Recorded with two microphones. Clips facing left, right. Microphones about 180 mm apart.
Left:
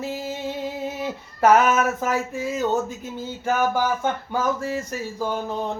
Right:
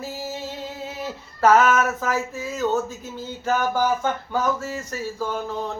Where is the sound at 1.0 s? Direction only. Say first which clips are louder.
Even; 15° left (ahead or behind).